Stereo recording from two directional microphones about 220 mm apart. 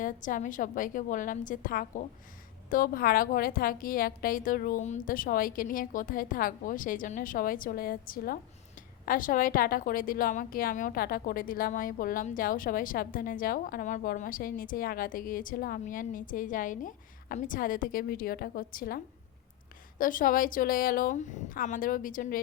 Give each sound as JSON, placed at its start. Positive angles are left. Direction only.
{"t": 0.0, "sound": "a woman's voice", "side_deg": 35}